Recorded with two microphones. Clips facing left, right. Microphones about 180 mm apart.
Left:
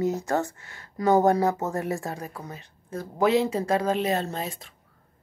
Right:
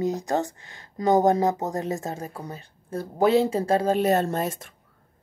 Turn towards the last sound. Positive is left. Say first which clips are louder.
# right 5 dB
turn(degrees=-45)  # may be behind; listen again after turning